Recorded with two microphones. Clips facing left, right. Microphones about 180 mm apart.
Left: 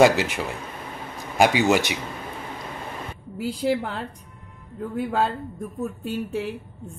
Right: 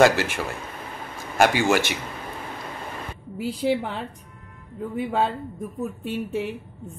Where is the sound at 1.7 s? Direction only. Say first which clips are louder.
Left 1 dB; 15° left (ahead or behind).